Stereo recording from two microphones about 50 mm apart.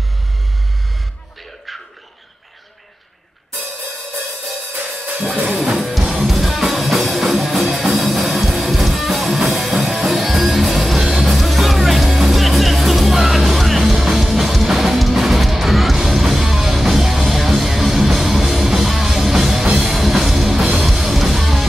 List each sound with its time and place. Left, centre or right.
4.7 s music: right
6.1 s music: centre